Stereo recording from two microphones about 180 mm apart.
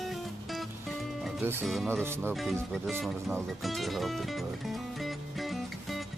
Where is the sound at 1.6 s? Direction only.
Centre (ahead or behind).